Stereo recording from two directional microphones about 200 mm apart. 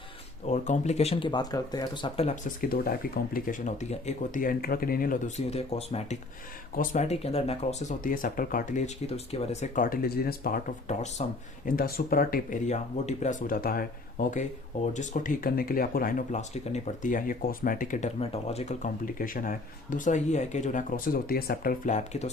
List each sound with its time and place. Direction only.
0.4 s speech: 35° left (ahead or behind)
2.6 s speech: 50° left (ahead or behind)